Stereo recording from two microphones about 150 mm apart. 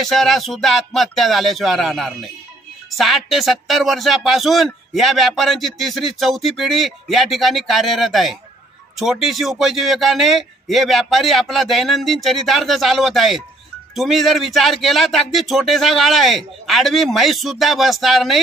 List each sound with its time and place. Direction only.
0.0 s speech: centre (ahead or behind)